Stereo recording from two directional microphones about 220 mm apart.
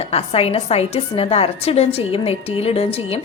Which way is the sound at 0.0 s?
25° left (ahead or behind).